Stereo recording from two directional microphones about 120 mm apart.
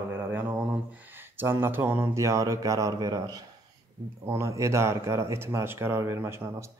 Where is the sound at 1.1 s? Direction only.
20° right (ahead or behind).